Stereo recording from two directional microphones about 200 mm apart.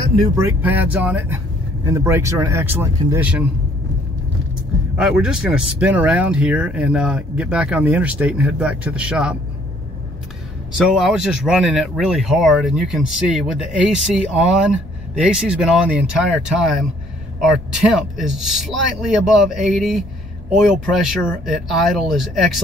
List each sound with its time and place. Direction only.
0.4 s speech: 10° right (ahead or behind)
4.9 s speech: 5° right (ahead or behind)
10.9 s speech: centre (ahead or behind)